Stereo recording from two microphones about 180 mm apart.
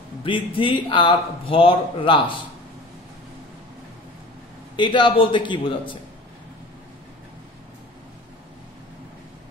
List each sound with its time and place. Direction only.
0.2 s a man's voice: 30° left (ahead or behind)
4.7 s a man's voice: 25° left (ahead or behind)